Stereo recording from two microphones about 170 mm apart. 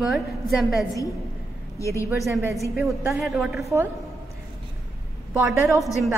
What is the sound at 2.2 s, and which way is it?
A woman's voice, centre (ahead or behind).